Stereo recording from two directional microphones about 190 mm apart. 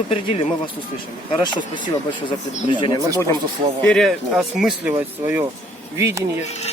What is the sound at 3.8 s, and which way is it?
Speech, 5° left (ahead or behind).